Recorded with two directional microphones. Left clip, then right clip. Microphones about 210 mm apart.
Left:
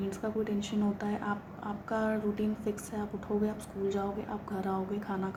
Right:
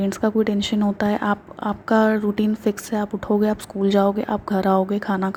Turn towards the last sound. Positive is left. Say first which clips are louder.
# right 12 dB
turn(degrees=-40)  # may be behind; listen again after turning